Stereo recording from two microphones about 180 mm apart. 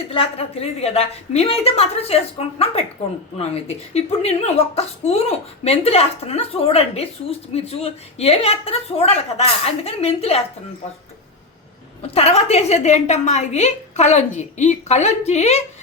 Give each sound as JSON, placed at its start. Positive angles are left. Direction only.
{"t": 0.1, "sound": "speech", "side_deg": 30}
{"t": 12.1, "sound": "speech", "side_deg": 35}